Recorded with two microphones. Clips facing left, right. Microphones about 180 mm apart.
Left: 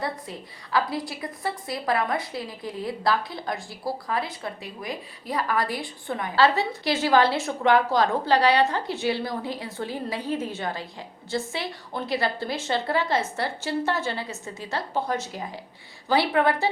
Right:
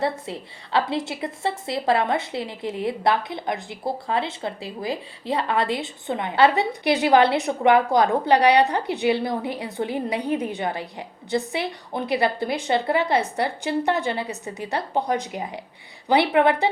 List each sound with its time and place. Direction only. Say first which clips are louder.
0.0 s a woman's voice: right 6 dB; 25° right (ahead or behind)